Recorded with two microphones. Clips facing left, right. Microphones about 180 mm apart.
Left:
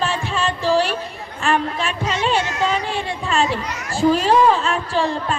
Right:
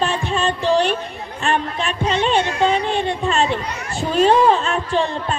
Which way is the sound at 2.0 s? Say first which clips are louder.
Right 3 dB; 30° right (ahead or behind).